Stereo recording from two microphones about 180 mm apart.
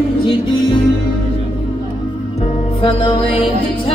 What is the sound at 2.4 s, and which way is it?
Music, 30° left (ahead or behind).